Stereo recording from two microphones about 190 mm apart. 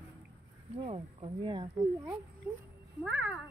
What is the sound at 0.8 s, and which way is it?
Speech, 30° right (ahead or behind).